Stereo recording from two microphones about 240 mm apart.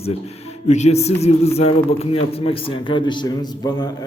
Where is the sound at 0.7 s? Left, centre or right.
Left.